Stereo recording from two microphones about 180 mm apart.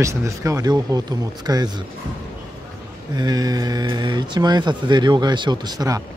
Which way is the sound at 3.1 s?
20° right (ahead or behind).